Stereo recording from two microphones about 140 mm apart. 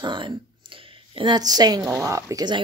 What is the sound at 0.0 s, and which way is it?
Speech, 35° right (ahead or behind).